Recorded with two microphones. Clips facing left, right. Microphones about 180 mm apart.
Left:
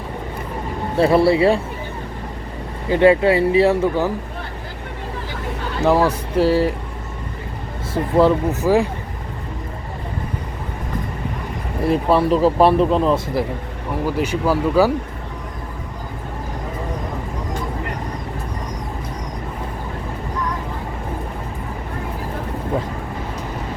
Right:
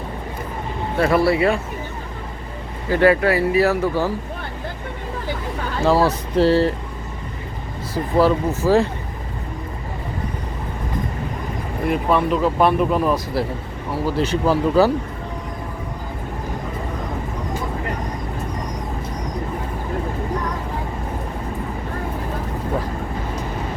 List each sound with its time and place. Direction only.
0.9 s speech: 25° left (ahead or behind)
2.9 s speech: 20° left (ahead or behind)
5.8 s speech: 15° left (ahead or behind)
7.9 s speech: 20° left (ahead or behind)
11.9 s speech: 35° left (ahead or behind)
14.2 s speech: 10° left (ahead or behind)